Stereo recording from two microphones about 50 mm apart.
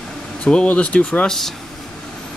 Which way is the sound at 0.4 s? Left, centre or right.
Left.